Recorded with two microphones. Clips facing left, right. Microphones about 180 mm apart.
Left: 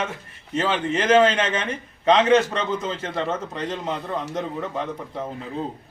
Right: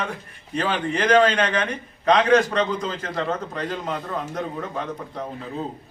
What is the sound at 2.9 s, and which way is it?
Speech, 25° left (ahead or behind).